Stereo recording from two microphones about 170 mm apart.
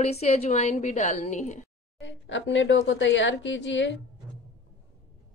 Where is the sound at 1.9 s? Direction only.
90° left.